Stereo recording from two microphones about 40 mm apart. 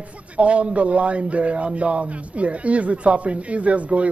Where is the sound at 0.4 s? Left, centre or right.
Right.